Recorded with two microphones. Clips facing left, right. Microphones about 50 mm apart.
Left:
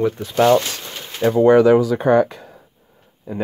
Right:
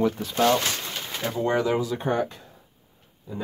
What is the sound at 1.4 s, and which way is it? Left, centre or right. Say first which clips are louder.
Speech: left 12 dB; left.